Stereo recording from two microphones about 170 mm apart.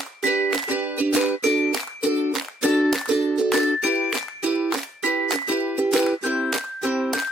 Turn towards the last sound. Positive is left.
turn(degrees=-5)  # may be behind; listen again after turning